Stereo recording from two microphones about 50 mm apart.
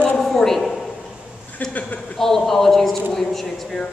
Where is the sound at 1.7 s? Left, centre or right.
Left.